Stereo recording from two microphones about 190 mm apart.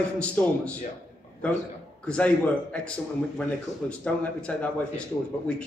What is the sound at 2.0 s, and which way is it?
Speech, 5° left (ahead or behind).